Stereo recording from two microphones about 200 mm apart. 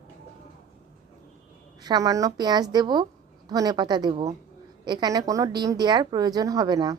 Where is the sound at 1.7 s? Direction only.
20° right (ahead or behind).